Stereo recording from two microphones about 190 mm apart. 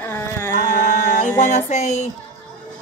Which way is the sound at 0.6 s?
40° left (ahead or behind).